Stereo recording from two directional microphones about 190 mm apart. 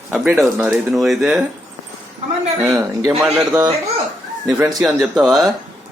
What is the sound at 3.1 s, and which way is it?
Speech, 10° right (ahead or behind).